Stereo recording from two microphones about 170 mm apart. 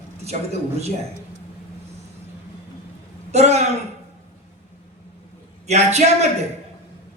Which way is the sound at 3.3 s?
40° right (ahead or behind).